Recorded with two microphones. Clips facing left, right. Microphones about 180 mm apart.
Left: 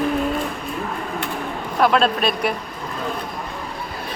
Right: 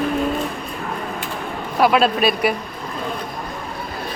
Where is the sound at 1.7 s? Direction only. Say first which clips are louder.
Right 1 dB; 5° right (ahead or behind).